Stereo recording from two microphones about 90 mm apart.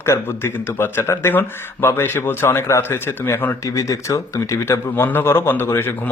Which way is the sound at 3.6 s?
35° left (ahead or behind).